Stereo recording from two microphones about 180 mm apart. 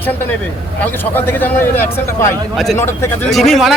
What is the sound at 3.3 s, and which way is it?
Speech, centre (ahead or behind).